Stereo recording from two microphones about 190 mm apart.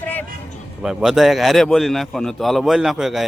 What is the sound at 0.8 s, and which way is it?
Speech, centre (ahead or behind).